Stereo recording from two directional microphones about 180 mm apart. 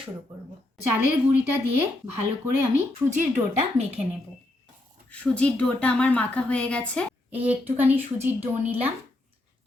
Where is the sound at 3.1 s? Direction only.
40° right (ahead or behind).